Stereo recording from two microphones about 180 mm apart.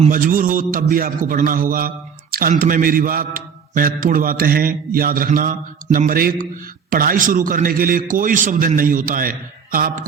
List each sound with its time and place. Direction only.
0.0 s mantra: 50° right (ahead or behind)